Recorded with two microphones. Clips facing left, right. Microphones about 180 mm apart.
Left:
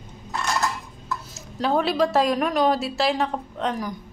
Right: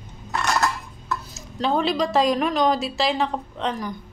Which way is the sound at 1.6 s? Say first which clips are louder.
Left 1 dB; 5° left (ahead or behind).